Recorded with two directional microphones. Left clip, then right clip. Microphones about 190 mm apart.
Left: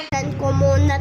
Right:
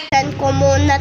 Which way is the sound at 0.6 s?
10° left (ahead or behind).